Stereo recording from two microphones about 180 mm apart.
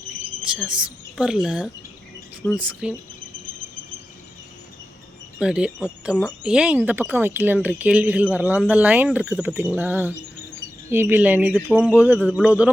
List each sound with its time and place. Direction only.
0.7 s a woman's voice: 5° right (ahead or behind)
5.4 s a woman's voice: 5° right (ahead or behind)